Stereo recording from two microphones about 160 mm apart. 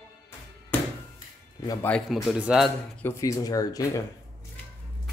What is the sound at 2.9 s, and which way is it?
Speech, 15° left (ahead or behind).